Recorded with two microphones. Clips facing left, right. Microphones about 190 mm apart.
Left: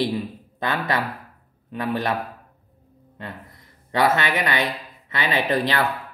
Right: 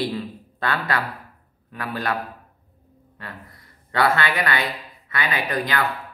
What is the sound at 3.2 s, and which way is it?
Speech, 20° left (ahead or behind).